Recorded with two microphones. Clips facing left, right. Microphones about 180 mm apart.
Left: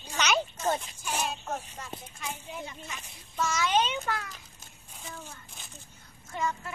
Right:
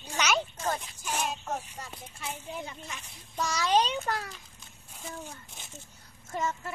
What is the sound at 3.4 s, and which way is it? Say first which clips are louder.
Speech: right 1 dB; 35° right (ahead or behind).